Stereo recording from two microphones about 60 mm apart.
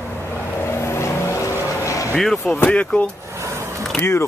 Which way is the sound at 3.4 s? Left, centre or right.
Right.